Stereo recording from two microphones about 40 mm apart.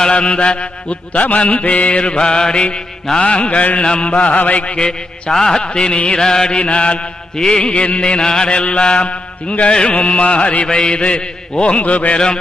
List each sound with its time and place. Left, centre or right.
0.0 s mantra: left
4.5 s mantra: left
7.6 s mantra: left
11.8 s mantra: left